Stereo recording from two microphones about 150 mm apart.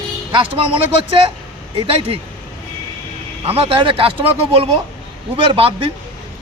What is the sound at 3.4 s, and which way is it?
Speech, 40° right (ahead or behind).